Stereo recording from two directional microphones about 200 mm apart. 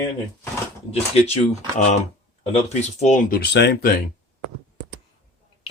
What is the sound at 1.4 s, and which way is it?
Speech, 35° left (ahead or behind).